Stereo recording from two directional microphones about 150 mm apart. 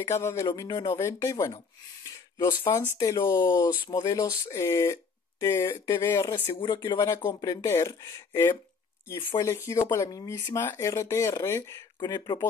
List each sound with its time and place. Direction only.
0.0 s speech: 20° left (ahead or behind)
2.0 s a sound: 30° left (ahead or behind)
3.0 s speech: 20° left (ahead or behind)
6.5 s speech: 35° left (ahead or behind)
7.6 s speech: 15° left (ahead or behind)
9.1 s speech: 30° left (ahead or behind)
9.7 s speech: 20° left (ahead or behind)